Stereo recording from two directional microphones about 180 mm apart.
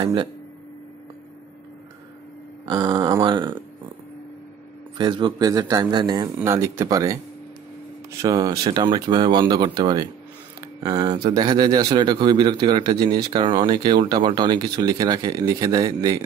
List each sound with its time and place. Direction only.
0.0 s speech: 25° right (ahead or behind)
2.6 s speech: 25° right (ahead or behind)
4.9 s speech: 25° right (ahead or behind)
10.6 s a sound: 20° right (ahead or behind)
11.2 s speech: 25° right (ahead or behind)